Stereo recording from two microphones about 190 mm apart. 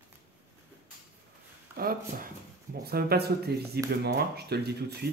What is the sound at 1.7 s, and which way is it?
Speech, 50° right (ahead or behind).